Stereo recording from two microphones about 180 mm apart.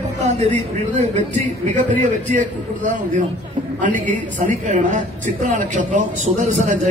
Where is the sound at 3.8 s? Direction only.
45° right (ahead or behind).